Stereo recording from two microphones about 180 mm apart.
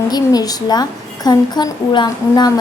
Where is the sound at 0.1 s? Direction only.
20° left (ahead or behind).